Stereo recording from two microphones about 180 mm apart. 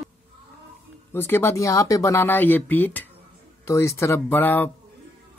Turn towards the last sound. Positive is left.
turn(degrees=10)  # may be behind; listen again after turning